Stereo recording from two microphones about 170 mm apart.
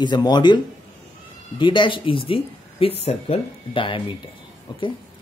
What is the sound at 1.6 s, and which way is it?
A woman's voice, 30° left (ahead or behind).